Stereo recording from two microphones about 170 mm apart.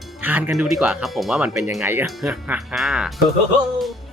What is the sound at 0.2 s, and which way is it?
Speech, 10° right (ahead or behind).